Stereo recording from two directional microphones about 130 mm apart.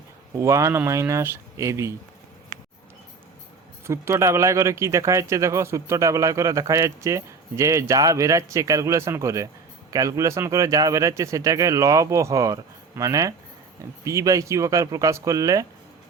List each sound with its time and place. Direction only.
0.3 s speech: 25° right (ahead or behind)
2.5 s a sound: 85° right
3.8 s speech: 20° right (ahead or behind)